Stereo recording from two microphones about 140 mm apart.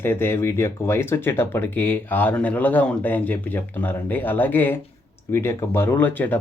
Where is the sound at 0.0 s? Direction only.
15° left (ahead or behind).